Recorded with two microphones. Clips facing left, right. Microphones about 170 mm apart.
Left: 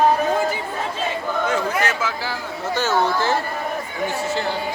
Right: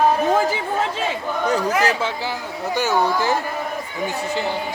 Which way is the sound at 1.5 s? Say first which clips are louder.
Right 5 dB; 35° right (ahead or behind).